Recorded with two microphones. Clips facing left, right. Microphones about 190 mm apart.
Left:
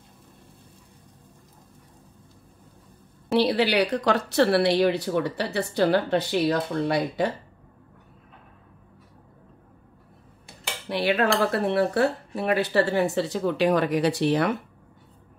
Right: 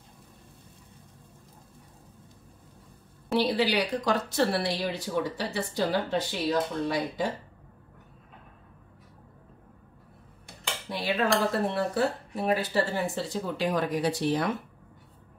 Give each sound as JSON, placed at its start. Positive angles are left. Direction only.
{"t": 3.3, "sound": "a woman's voice", "side_deg": 70}
{"t": 10.9, "sound": "speech", "side_deg": 70}